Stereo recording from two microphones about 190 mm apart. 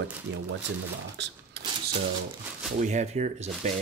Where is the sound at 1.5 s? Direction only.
60° right (ahead or behind).